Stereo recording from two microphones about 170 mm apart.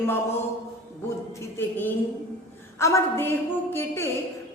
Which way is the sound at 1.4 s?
15° left (ahead or behind).